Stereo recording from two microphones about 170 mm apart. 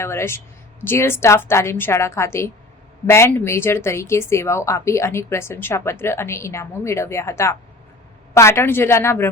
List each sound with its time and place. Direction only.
0.0 s speech: 15° left (ahead or behind)